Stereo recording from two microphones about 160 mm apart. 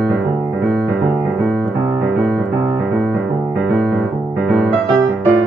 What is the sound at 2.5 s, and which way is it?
Music, 15° right (ahead or behind).